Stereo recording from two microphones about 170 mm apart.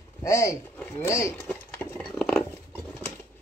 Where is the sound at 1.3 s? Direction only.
5° left (ahead or behind).